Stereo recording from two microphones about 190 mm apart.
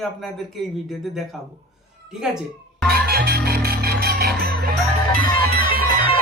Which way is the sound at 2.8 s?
55° right (ahead or behind).